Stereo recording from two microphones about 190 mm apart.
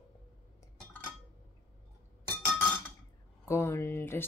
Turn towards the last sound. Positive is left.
turn(degrees=10)  # may be behind; listen again after turning